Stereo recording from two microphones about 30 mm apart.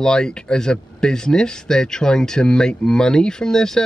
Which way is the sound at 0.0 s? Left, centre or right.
Left.